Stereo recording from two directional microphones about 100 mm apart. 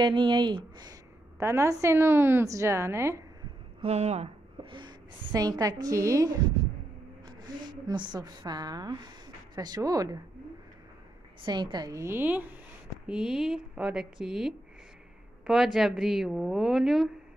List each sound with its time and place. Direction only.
0.0 s speech: 50° right (ahead or behind)
1.4 s a woman's voice: 30° right (ahead or behind)
3.8 s a sound: 90° right
4.7 s a woman's voice: 45° right (ahead or behind)
7.2 s a woman's voice: 50° right (ahead or behind)
11.4 s speech: 50° right (ahead or behind)
12.0 s a woman's voice: 20° right (ahead or behind); by 17.1 s centre (ahead or behind)